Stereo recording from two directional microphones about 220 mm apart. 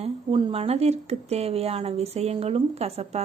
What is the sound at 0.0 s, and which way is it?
Speech, 25° right (ahead or behind).